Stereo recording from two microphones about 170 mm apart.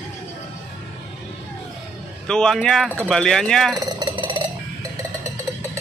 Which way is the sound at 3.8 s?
25° right (ahead or behind).